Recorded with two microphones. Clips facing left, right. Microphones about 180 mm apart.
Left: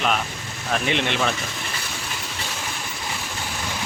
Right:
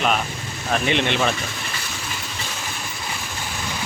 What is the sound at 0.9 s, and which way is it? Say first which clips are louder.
Speech: right 3 dB; centre (ahead or behind).